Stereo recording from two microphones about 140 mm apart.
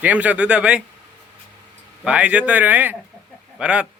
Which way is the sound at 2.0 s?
10° right (ahead or behind).